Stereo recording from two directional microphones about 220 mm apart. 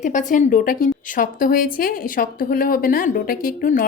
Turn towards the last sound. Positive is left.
turn(degrees=40)  # may be behind; listen again after turning